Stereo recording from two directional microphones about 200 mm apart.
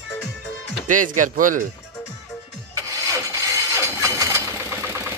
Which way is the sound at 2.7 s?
15° right (ahead or behind).